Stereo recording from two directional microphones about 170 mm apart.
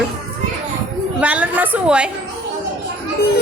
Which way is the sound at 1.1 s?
10° right (ahead or behind).